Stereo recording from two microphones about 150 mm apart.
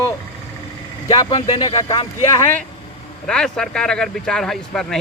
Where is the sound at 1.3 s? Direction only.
30° left (ahead or behind).